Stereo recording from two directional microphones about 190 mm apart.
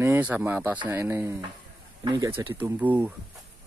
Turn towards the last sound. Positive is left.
turn(degrees=-10)  # may be behind; listen again after turning